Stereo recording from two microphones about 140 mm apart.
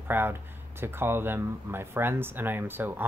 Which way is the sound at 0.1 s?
15° right (ahead or behind).